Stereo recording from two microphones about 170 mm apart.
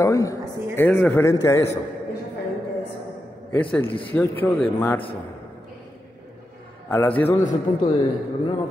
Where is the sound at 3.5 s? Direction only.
10° left (ahead or behind).